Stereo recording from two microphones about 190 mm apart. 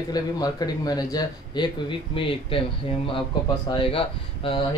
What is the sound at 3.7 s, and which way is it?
Speech, 30° left (ahead or behind).